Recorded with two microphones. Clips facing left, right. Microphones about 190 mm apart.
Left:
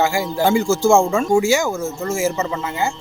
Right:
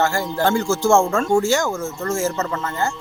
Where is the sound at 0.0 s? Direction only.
10° left (ahead or behind).